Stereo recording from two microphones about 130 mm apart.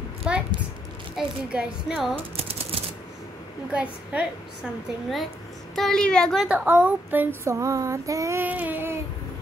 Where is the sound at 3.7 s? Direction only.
10° right (ahead or behind).